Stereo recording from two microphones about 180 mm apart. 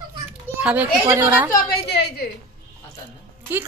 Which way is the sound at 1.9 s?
65° left (ahead or behind).